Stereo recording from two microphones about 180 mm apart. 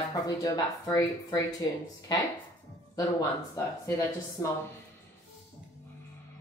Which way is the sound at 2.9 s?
20° left (ahead or behind).